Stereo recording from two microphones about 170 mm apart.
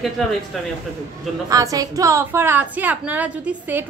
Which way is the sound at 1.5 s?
20° right (ahead or behind).